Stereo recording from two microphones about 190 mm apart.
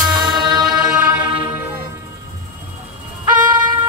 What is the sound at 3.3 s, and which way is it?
Music, 20° right (ahead or behind).